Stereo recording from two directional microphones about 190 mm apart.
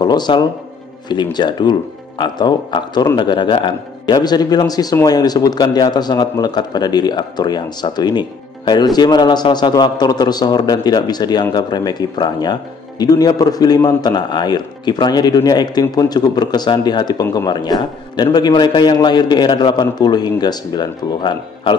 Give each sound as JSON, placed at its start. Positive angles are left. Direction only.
{"t": 0.0, "sound": "speech", "side_deg": 20}